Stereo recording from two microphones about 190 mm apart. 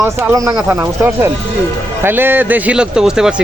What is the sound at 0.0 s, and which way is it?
A man's voice, 10° right (ahead or behind).